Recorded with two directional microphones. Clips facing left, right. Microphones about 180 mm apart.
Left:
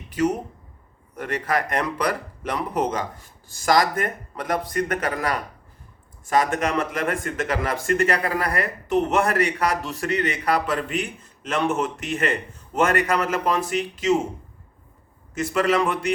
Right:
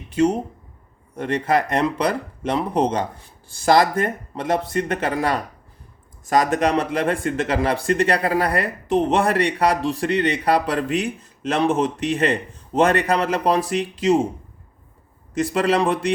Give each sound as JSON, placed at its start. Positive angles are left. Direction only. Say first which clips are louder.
{"t": 0.1, "sound": "speech", "louder": "right 4 dB", "side_deg": -30}
{"t": 15.4, "sound": "speech", "louder": "right 2 dB", "side_deg": -30}